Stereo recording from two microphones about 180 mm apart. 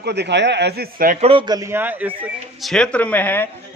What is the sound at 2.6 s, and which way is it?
Speech, 5° left (ahead or behind).